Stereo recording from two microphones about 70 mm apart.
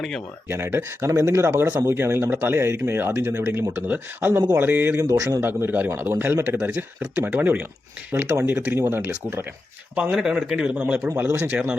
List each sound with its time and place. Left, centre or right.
0.4 s speech: right
3.8 s speech: right
4.9 s a man's voice: right
5.4 s speech: right
6.6 s speech: centre
7.2 s speech: right
8.1 s speech: right
9.9 s speech: centre
11.2 s speech: right